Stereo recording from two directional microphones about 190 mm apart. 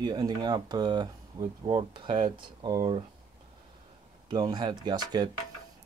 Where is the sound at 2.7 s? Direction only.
35° right (ahead or behind).